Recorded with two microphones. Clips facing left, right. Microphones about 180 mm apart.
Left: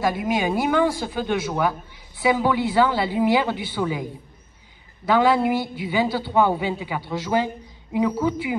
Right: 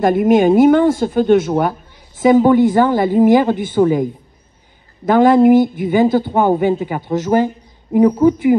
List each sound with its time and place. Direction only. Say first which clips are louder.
0.0 s speech: right 11 dB; 50° right (ahead or behind)